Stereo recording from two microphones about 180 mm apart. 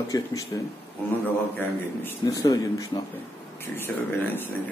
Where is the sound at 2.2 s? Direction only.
20° left (ahead or behind).